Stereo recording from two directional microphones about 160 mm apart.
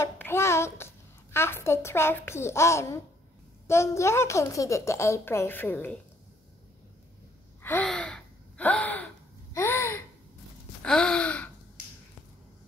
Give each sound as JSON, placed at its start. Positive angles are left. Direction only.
{"t": 0.0, "sound": "a child's voice", "side_deg": 15}
{"t": 7.6, "sound": "gasp", "side_deg": 10}
{"t": 10.8, "sound": "gasp", "side_deg": 5}